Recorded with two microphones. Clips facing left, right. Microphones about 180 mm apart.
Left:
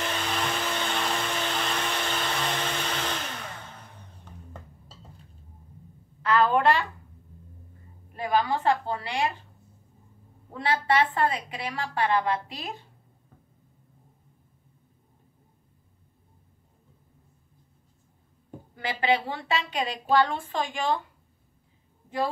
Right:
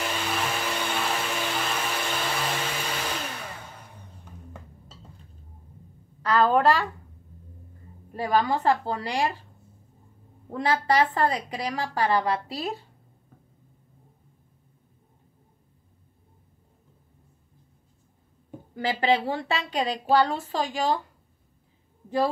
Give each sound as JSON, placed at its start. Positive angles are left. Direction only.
{"t": 0.0, "sound": "vehicle", "side_deg": -10}
{"t": 6.2, "sound": "a sound", "side_deg": -40}
{"t": 8.2, "sound": "a woman's voice", "side_deg": -40}
{"t": 10.6, "sound": "a woman's voice", "side_deg": -40}
{"t": 18.8, "sound": "a woman's voice", "side_deg": -35}